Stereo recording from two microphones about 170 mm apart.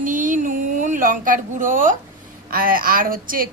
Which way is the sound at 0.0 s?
50° right (ahead or behind).